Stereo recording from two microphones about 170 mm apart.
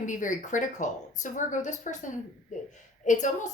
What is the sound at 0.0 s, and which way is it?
A woman's voice, 50° left (ahead or behind).